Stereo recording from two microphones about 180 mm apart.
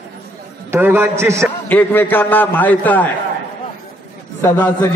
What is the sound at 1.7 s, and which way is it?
A man's voice, 10° left (ahead or behind).